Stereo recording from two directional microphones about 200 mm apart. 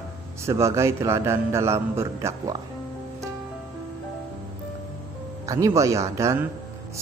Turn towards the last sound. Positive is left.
turn(degrees=-15)  # may be behind; listen again after turning